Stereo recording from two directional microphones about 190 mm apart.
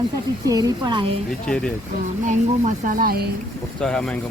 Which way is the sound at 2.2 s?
45° right (ahead or behind).